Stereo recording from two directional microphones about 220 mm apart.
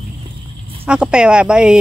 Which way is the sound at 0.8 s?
5° right (ahead or behind).